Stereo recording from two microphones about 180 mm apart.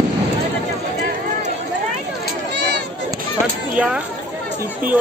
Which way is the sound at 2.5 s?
70° right (ahead or behind).